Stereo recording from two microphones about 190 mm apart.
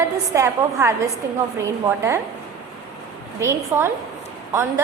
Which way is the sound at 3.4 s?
15° right (ahead or behind).